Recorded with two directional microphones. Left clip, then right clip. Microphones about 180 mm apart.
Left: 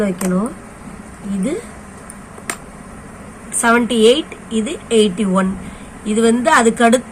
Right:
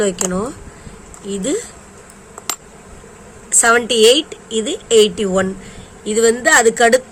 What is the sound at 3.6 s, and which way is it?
A woman's voice, 55° right (ahead or behind).